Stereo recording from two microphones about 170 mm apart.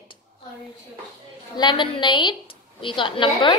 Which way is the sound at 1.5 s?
25° left (ahead or behind).